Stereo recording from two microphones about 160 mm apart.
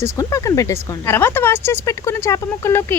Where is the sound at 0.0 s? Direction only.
20° left (ahead or behind).